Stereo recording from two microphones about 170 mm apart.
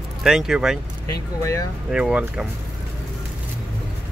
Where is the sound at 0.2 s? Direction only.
5° right (ahead or behind).